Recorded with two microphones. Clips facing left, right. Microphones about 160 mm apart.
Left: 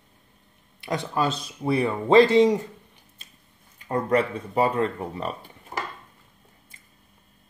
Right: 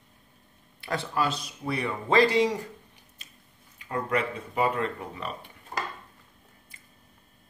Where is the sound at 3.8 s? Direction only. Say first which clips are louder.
Left 6 dB; 35° left (ahead or behind).